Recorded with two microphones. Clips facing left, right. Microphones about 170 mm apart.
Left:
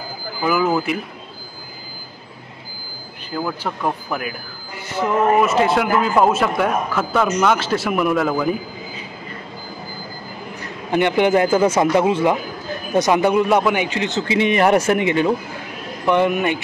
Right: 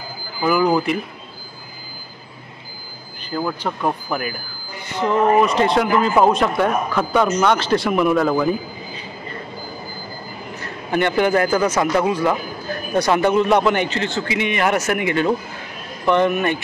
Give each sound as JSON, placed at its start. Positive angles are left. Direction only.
{"t": 0.5, "sound": "speech", "side_deg": 5}
{"t": 3.3, "sound": "speech", "side_deg": 0}
{"t": 10.6, "sound": "a man's voice", "side_deg": 15}